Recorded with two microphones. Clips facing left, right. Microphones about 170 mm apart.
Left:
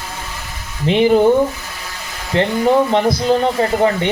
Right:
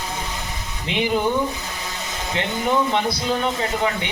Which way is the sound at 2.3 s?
35° left (ahead or behind).